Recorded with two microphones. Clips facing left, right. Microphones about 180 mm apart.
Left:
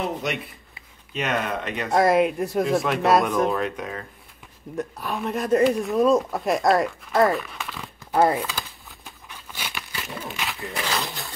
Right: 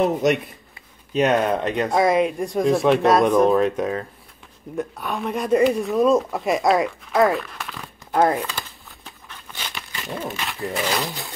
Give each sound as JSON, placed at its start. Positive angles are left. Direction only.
{"t": 0.0, "sound": "speech", "side_deg": -45}
{"t": 1.9, "sound": "speech", "side_deg": 0}
{"t": 4.7, "sound": "speech", "side_deg": 0}
{"t": 9.3, "sound": "a sound", "side_deg": 10}
{"t": 9.8, "sound": "speech", "side_deg": 0}